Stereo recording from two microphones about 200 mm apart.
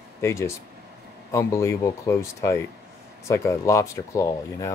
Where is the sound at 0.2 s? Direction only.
15° left (ahead or behind).